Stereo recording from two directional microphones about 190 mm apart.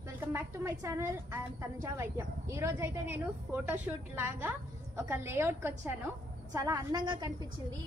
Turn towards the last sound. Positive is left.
turn(degrees=-20)  # may be behind; listen again after turning